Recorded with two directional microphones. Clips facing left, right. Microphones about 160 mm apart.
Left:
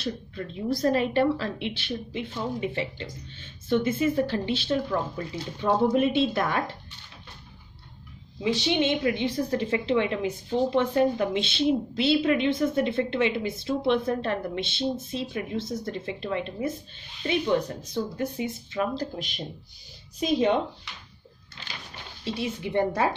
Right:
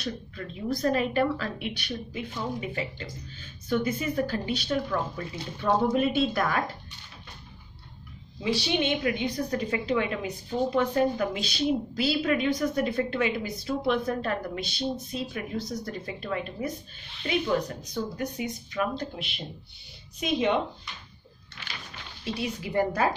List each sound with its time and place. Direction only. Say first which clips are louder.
0.0 s a woman's voice: left 2 dB; 30° left (ahead or behind)
8.4 s a woman's voice: left 2 dB; 20° left (ahead or behind)
22.2 s a woman's voice: left 2 dB; 25° left (ahead or behind)